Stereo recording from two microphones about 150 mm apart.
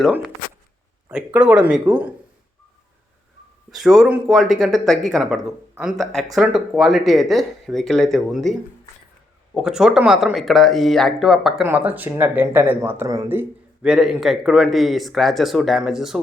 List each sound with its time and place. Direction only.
0.0 s speech: 5° right (ahead or behind)
3.7 s speech: centre (ahead or behind)
9.6 s speech: 5° right (ahead or behind)
11.6 s speech: 10° right (ahead or behind)